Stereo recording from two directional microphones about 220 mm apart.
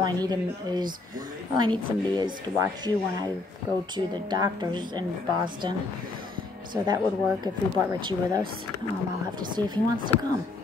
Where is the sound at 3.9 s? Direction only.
20° right (ahead or behind).